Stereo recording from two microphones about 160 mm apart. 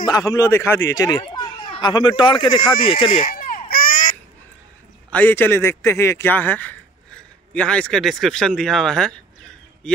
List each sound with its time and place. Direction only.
0.0 s speech: 25° left (ahead or behind)
3.2 s baby cry: 60° left (ahead or behind)
5.1 s a man's voice: 10° left (ahead or behind)